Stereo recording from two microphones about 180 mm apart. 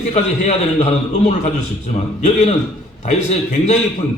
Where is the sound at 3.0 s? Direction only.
40° left (ahead or behind).